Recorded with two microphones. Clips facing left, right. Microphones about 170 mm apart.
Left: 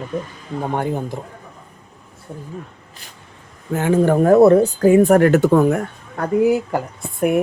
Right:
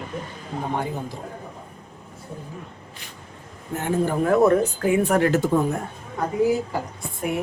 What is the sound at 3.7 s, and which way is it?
Speech, 90° left.